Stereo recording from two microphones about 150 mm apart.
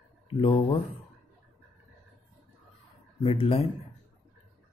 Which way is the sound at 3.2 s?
40° left (ahead or behind).